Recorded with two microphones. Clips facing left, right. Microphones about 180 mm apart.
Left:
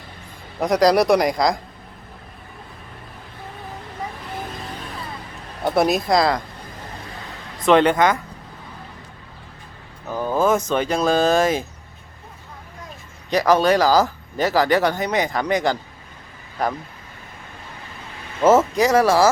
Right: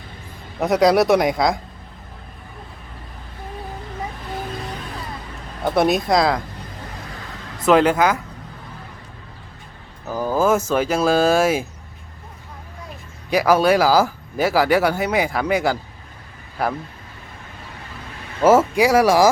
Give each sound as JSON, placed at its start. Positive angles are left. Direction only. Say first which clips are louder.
{"t": 0.6, "sound": "speech", "louder": "right 1 dB", "side_deg": -5}
{"t": 5.6, "sound": "speech", "louder": "right 1 dB", "side_deg": 0}
{"t": 7.6, "sound": "speech", "louder": "even", "side_deg": -5}
{"t": 10.1, "sound": "speech", "louder": "right 1 dB", "side_deg": -5}
{"t": 13.3, "sound": "speech", "louder": "right 1 dB", "side_deg": -10}
{"t": 18.4, "sound": "speech", "louder": "right 1 dB", "side_deg": -10}